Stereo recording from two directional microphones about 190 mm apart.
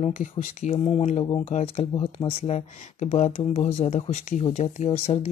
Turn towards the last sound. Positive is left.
turn(degrees=35)  # may be behind; listen again after turning